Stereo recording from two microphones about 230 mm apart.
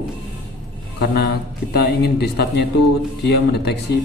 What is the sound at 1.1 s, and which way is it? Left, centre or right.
A man's voice, left.